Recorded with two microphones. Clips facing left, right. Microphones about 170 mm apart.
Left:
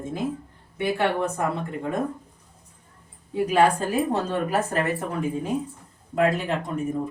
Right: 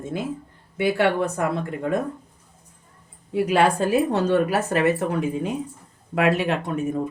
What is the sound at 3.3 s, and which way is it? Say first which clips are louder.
A woman's voice: right 1 dB; 75° right (ahead or behind).